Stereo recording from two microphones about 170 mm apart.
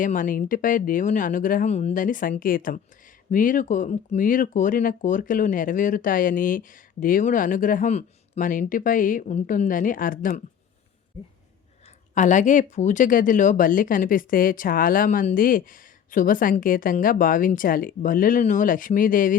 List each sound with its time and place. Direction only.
0.0 s speech: 50° left (ahead or behind)
12.1 s speech: 45° left (ahead or behind)